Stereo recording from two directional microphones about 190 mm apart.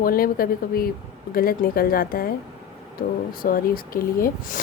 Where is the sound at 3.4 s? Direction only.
50° left (ahead or behind).